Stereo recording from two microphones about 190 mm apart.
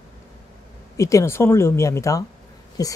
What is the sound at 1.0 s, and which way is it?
A woman's voice, 15° left (ahead or behind).